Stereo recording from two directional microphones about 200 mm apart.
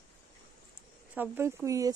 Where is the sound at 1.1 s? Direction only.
10° right (ahead or behind).